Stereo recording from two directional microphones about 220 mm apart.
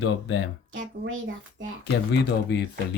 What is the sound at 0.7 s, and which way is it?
Speech, 55° right (ahead or behind).